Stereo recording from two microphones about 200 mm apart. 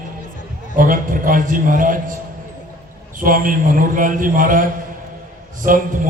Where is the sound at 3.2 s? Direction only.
45° right (ahead or behind).